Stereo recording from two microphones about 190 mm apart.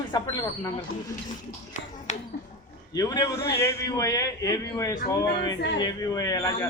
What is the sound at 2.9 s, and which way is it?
Speech, 20° left (ahead or behind).